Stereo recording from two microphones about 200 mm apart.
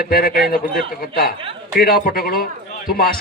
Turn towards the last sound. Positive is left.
turn(degrees=50)  # may be behind; listen again after turning